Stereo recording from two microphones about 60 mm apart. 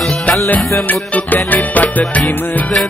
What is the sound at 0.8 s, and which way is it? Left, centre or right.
Music, left.